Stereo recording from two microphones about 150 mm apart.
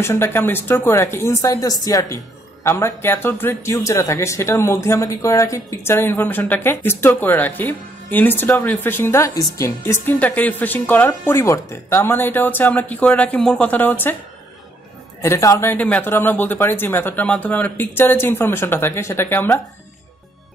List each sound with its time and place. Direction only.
0.0 s speech: 15° left (ahead or behind)
10.0 s speech: 10° left (ahead or behind)
15.2 s speech: 20° left (ahead or behind)